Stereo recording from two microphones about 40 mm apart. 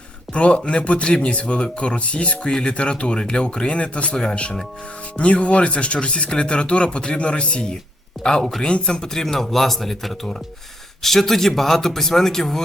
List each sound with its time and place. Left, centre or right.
0.3 s speech: left
4.1 s speech: centre
5.1 s speech: left; by 12.6 s centre